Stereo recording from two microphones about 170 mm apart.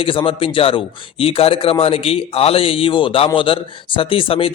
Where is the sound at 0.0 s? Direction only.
30° left (ahead or behind).